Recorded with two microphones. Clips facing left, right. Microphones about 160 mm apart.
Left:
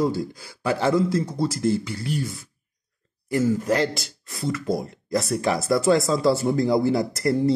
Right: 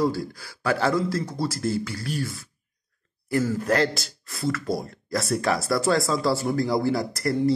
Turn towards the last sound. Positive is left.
turn(degrees=25)  # may be behind; listen again after turning